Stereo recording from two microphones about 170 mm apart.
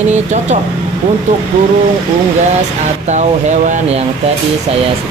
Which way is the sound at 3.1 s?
45° right (ahead or behind).